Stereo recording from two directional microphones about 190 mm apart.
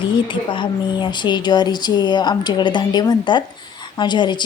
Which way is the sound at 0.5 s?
25° left (ahead or behind).